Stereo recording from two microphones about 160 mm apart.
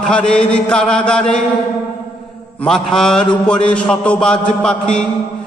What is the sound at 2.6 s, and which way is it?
Mantra, 5° left (ahead or behind).